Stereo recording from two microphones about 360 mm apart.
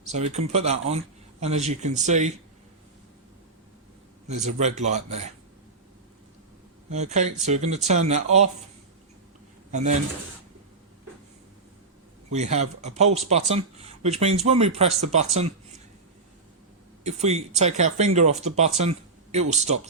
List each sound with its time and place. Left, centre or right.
0.1 s speech: centre
4.3 s speech: centre
6.9 s speech: centre
12.3 s speech: centre
17.0 s speech: centre